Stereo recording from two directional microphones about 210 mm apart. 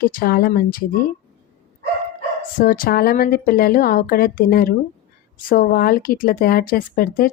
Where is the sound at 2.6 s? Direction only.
45° left (ahead or behind).